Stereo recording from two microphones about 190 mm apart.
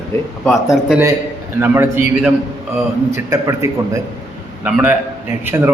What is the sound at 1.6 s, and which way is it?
A man's voice, 10° right (ahead or behind).